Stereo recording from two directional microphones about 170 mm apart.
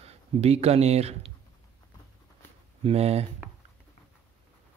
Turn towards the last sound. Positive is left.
turn(degrees=-35)  # may be behind; listen again after turning